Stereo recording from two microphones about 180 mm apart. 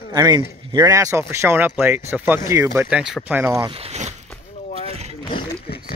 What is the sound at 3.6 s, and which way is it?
Speech, 35° right (ahead or behind).